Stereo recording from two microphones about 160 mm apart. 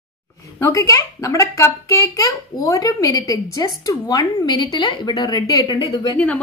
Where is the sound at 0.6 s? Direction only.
20° left (ahead or behind).